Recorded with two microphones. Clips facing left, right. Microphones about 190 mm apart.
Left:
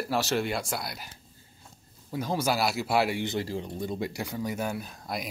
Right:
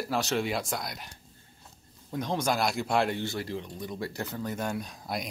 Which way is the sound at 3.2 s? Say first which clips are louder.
Left 3 dB; 25° left (ahead or behind).